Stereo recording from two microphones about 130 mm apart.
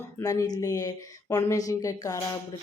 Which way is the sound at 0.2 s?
30° left (ahead or behind).